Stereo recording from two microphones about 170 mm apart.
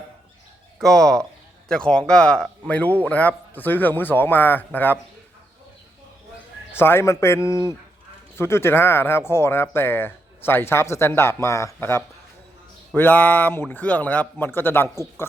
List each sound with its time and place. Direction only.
0.8 s speech: 5° left (ahead or behind)
6.7 s speech: 15° left (ahead or behind)